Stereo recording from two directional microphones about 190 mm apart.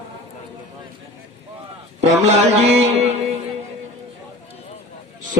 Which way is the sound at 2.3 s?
35° right (ahead or behind).